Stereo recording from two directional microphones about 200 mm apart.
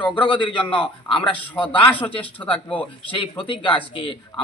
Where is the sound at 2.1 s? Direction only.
25° left (ahead or behind).